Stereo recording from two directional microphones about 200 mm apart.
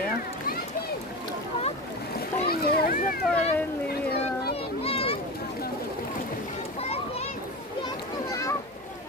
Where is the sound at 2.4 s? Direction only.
50° left (ahead or behind).